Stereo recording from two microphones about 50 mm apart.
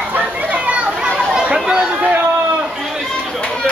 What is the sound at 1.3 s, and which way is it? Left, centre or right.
Chatter, centre.